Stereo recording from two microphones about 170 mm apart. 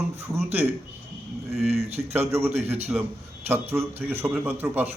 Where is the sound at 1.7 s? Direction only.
40° right (ahead or behind).